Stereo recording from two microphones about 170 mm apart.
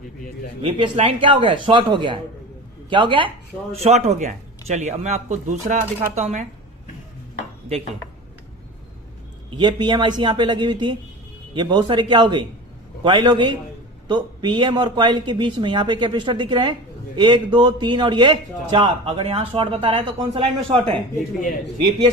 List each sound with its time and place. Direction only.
0.6 s a man's voice: 35° right (ahead or behind)
9.5 s a man's voice: 25° right (ahead or behind)